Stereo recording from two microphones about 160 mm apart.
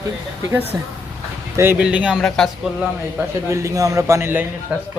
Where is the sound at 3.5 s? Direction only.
20° right (ahead or behind).